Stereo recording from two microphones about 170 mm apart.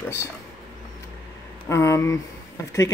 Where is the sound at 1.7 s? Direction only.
20° left (ahead or behind).